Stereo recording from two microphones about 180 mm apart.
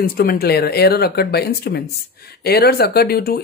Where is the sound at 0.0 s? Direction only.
55° left (ahead or behind).